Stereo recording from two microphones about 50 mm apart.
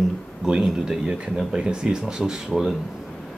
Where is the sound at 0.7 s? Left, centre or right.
Centre.